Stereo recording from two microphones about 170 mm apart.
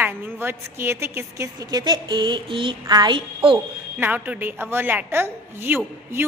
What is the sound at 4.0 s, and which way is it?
A woman's voice, 10° right (ahead or behind).